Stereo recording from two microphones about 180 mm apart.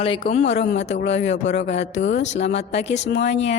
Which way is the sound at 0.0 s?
35° left (ahead or behind).